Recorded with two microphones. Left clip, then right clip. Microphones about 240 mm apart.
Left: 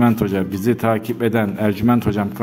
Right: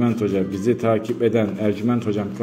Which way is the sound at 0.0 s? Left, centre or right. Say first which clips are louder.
Left 3 dB; left.